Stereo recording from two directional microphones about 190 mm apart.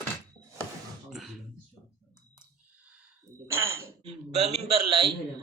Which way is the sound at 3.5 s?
15° right (ahead or behind).